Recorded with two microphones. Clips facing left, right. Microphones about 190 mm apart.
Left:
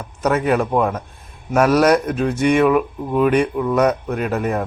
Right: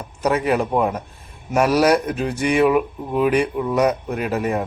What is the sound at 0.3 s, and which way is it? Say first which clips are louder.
Speech: left 2 dB; 5° right (ahead or behind).